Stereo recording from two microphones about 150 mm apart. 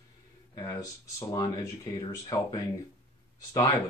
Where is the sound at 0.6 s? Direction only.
25° left (ahead or behind).